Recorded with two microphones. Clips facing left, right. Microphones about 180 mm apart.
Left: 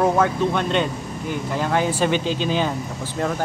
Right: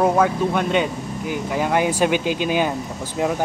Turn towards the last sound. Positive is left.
turn(degrees=-10)  # may be behind; listen again after turning